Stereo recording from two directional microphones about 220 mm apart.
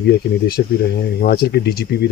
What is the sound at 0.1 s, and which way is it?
Speech, 50° left (ahead or behind).